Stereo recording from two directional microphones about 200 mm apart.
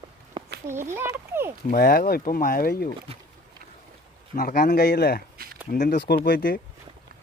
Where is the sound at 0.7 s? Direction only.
10° right (ahead or behind).